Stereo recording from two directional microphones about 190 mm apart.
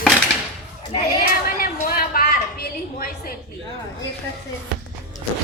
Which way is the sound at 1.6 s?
50° left (ahead or behind).